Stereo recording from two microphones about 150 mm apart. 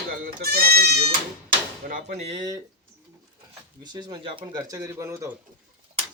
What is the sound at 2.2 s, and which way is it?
Speech, 30° right (ahead or behind).